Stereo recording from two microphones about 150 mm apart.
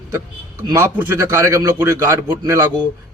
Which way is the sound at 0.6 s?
15° right (ahead or behind).